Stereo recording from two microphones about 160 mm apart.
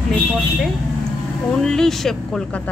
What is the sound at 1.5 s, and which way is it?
Speech, 5° left (ahead or behind).